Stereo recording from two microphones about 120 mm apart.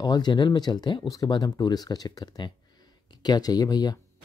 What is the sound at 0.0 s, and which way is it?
Speech, 35° left (ahead or behind).